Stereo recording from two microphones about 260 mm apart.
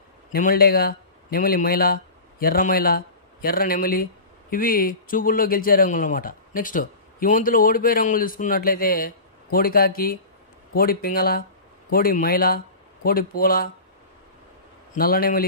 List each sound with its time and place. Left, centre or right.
0.3 s speech: left
15.0 s speech: left